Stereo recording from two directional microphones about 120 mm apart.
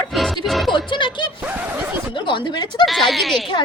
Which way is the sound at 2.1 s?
40° left (ahead or behind).